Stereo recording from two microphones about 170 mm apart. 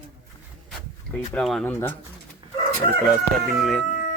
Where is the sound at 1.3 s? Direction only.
5° left (ahead or behind).